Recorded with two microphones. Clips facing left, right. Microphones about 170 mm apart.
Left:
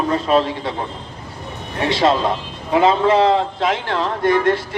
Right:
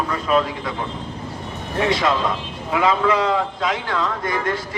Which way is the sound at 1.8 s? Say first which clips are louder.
Left 3 dB; 30° left (ahead or behind).